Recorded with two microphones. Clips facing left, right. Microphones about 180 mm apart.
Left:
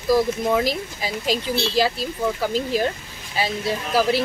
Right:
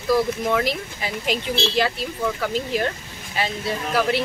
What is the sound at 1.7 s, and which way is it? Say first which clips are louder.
Speech: left 2 dB; 10° left (ahead or behind).